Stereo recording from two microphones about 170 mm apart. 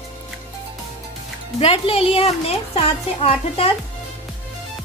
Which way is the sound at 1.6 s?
35° left (ahead or behind).